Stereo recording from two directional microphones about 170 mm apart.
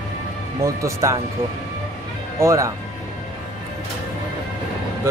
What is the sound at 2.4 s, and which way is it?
Speech, 15° right (ahead or behind).